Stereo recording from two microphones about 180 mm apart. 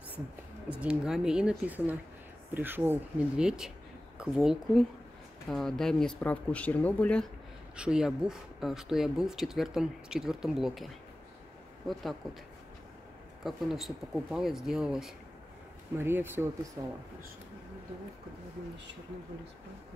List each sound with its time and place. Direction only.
0.7 s speech: 5° right (ahead or behind)
7.7 s speech: 5° right (ahead or behind)
11.9 s speech: centre (ahead or behind)
13.4 s speech: centre (ahead or behind); by 16.9 s 15° right (ahead or behind)